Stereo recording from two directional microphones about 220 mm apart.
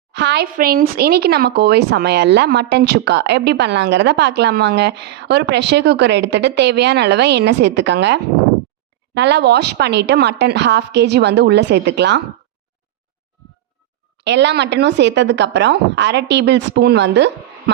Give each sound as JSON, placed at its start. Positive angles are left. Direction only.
{"t": 0.1, "sound": "speech", "side_deg": -50}
{"t": 14.2, "sound": "speech", "side_deg": -50}